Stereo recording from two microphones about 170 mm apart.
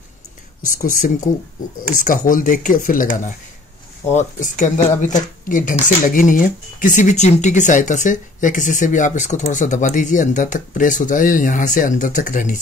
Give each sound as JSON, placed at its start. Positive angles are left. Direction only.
{"t": 0.6, "sound": "speech", "side_deg": 55}